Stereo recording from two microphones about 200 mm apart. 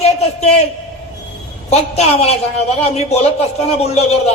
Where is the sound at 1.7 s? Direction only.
30° left (ahead or behind).